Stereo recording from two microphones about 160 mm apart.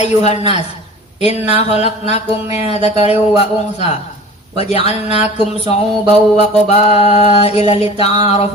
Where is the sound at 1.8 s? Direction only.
45° left (ahead or behind).